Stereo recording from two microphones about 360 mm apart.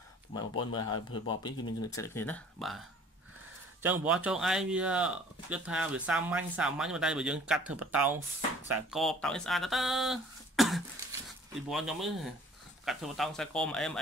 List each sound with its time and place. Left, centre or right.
0.3 s speech: centre
0.7 s speech: left
1.9 s speech: centre
3.8 s speech: centre